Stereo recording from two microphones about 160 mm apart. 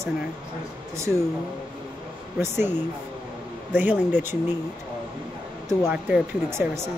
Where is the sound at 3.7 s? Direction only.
10° right (ahead or behind).